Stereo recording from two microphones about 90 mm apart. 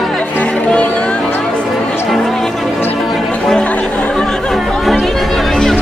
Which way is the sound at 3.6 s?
15° left (ahead or behind).